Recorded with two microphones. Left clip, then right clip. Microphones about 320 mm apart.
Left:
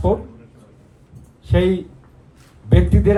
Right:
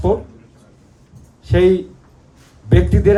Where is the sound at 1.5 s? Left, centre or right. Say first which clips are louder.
Right 5 dB; right.